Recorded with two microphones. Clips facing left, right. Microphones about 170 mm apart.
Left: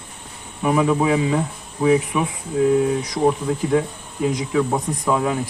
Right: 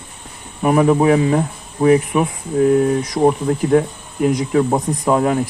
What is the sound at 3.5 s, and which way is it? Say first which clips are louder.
Speech: right 4 dB; 55° right (ahead or behind).